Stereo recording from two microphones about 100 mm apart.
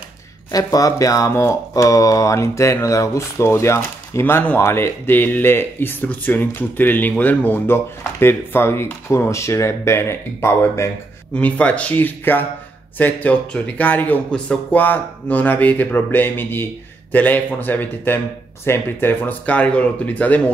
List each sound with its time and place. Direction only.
0.5 s speech: 35° left (ahead or behind)
11.3 s speech: 10° left (ahead or behind)